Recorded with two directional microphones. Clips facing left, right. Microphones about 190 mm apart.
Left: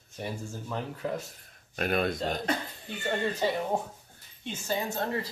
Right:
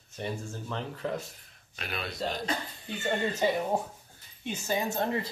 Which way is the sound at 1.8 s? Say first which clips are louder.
Left 7 dB; 50° left (ahead or behind).